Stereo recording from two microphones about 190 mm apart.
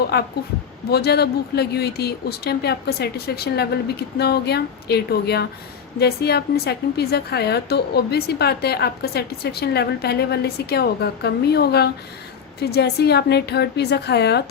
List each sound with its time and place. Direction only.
0.1 s a woman's voice: 60° left (ahead or behind)